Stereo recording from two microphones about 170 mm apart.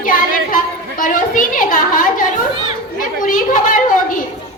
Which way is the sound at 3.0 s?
50° left (ahead or behind).